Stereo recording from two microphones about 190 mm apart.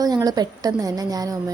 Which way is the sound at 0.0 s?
20° right (ahead or behind).